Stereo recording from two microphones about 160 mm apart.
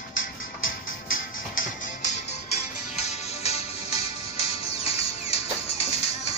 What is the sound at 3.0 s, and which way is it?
Music, 40° left (ahead or behind).